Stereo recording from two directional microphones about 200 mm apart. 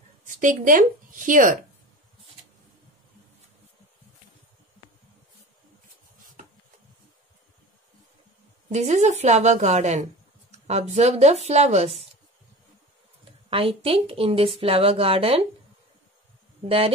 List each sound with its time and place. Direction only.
0.4 s a woman's voice: 40° right (ahead or behind)
8.7 s a woman's voice: 35° right (ahead or behind)
13.5 s a woman's voice: 25° right (ahead or behind)
16.6 s a woman's voice: 30° right (ahead or behind)